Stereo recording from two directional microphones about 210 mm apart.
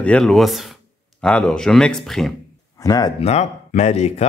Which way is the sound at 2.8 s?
15° left (ahead or behind).